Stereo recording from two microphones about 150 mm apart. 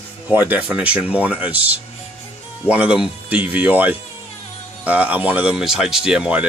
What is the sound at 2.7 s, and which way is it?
Speech, 10° right (ahead or behind).